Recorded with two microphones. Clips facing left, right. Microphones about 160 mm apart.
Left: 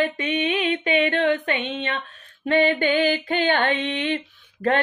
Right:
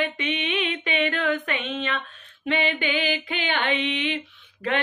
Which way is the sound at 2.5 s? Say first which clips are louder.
Left 6 dB; 45° left (ahead or behind).